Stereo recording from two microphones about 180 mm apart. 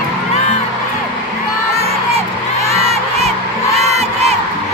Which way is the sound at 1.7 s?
35° right (ahead or behind).